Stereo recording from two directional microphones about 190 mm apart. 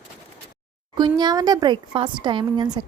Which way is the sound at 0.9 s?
20° right (ahead or behind).